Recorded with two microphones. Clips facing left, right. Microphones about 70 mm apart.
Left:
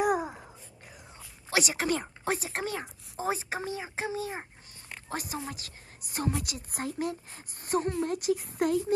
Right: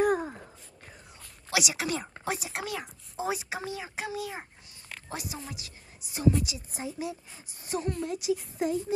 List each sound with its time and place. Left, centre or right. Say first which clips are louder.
0.0 s a sound: right 1 dB; centre
1.5 s a woman's voice: left 2 dB; left
4.4 s babbling: left 1 dB; centre
5.1 s a woman's voice: left 3 dB; left